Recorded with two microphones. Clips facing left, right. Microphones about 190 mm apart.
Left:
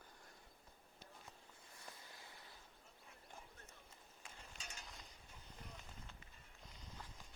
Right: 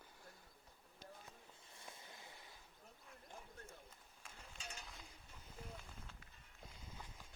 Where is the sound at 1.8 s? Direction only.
25° right (ahead or behind).